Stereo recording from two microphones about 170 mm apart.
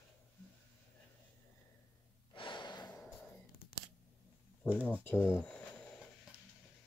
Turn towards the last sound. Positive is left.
turn(degrees=10)  # may be behind; listen again after turning